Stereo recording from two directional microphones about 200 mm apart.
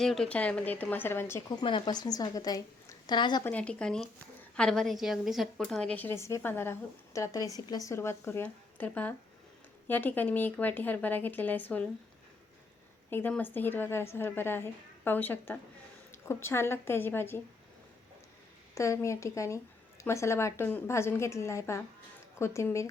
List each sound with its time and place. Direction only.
0.0 s a woman's voice: centre (ahead or behind)
1.6 s a woman's voice: 25° left (ahead or behind)
3.4 s a woman's voice: 5° left (ahead or behind)
13.1 s a woman's voice: 10° left (ahead or behind)
18.7 s a woman's voice: 15° left (ahead or behind)